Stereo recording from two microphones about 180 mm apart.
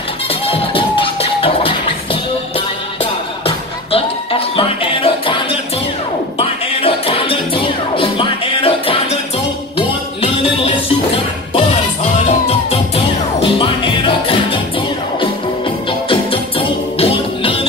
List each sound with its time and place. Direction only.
0.3 s music: 30° left (ahead or behind)
16.1 s music: 30° left (ahead or behind)